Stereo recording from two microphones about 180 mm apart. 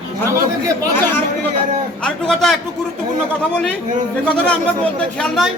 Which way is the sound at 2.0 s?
5° left (ahead or behind).